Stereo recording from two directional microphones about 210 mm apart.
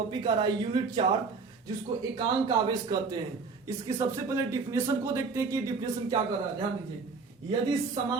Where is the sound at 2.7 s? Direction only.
20° right (ahead or behind).